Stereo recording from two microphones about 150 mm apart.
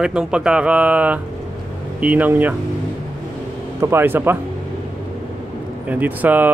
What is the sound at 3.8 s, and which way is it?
Speech, 15° right (ahead or behind).